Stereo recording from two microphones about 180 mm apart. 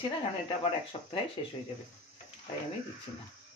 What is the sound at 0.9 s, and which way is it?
Speech, 35° left (ahead or behind).